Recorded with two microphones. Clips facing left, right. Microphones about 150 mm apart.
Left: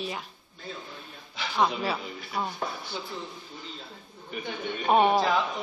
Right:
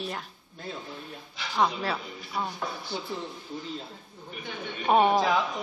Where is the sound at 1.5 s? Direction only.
Centre (ahead or behind).